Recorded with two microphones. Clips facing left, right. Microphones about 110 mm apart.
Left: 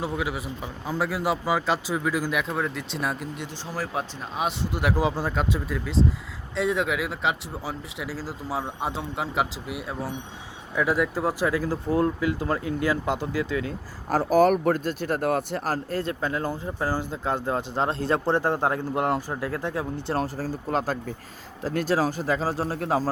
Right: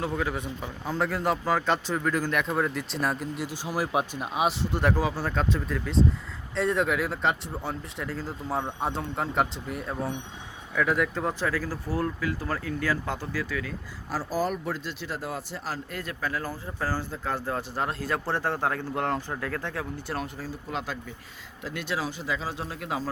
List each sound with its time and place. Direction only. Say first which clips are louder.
0.0 s a man's voice: even; 10° left (ahead or behind); by 4.4 s 10° right (ahead or behind)
4.4 s a man's voice: even; centre (ahead or behind)
4.9 s a man's voice: left 2 dB; 15° left (ahead or behind)
14.1 s speech: left 9 dB; 60° left (ahead or behind)
15.9 s speech: left 5 dB; 30° left (ahead or behind)